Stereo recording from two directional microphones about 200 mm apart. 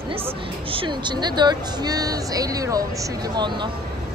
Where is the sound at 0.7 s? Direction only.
25° right (ahead or behind).